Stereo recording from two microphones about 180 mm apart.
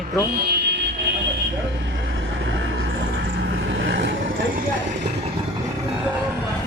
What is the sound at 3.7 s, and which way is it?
Vehicle, 80° right.